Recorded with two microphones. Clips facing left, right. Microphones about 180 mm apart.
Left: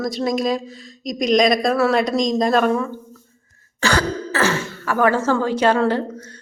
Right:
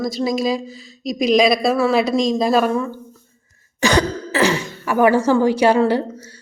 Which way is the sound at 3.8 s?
15° right (ahead or behind).